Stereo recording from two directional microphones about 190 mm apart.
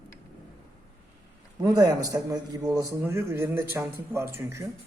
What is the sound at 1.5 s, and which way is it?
A man's voice, 20° right (ahead or behind).